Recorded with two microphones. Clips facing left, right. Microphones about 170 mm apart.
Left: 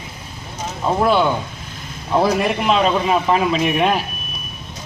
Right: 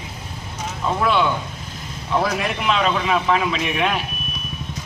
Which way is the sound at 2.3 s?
40° left (ahead or behind).